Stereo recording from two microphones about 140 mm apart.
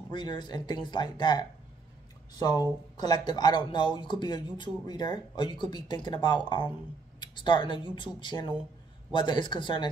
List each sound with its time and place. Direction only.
0.1 s speech: 35° left (ahead or behind)